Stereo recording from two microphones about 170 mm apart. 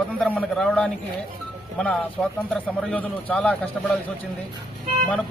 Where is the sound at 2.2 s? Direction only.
Centre (ahead or behind).